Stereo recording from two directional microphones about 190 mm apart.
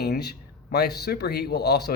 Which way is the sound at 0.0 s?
60° left (ahead or behind).